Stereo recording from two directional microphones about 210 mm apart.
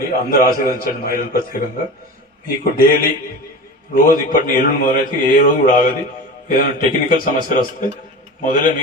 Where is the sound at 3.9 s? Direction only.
40° left (ahead or behind).